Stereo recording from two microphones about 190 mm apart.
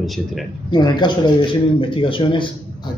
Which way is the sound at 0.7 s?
25° left (ahead or behind).